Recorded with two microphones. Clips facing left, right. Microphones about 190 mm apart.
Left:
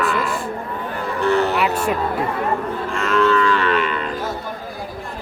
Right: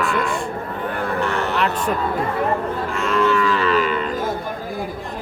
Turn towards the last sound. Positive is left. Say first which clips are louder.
# even
turn(degrees=0)  # may be behind; listen again after turning